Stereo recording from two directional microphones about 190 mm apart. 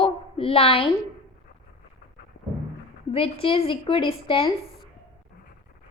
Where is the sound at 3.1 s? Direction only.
30° left (ahead or behind).